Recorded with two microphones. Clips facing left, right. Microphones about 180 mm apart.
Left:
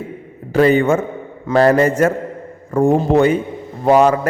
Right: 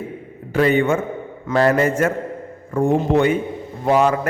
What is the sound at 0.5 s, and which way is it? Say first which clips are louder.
A man's voice: left 4 dB; 40° left (ahead or behind).